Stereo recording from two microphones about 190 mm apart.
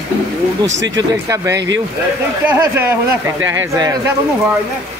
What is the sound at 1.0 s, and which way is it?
A man's voice, 15° right (ahead or behind).